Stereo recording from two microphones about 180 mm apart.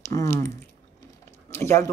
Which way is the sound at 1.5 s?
15° left (ahead or behind).